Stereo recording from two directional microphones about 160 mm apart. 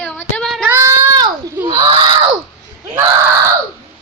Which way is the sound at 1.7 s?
35° right (ahead or behind).